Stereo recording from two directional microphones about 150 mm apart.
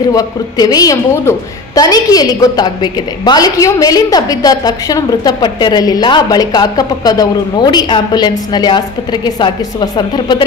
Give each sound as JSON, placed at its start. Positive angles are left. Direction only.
{"t": 0.1, "sound": "a woman's voice", "side_deg": 25}